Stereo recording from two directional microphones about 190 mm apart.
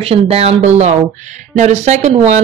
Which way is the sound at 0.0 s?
30° right (ahead or behind).